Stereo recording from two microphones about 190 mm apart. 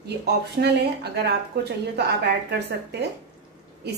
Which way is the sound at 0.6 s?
60° right (ahead or behind).